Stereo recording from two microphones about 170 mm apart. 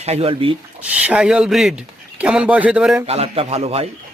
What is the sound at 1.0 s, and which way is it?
Speech, 5° right (ahead or behind).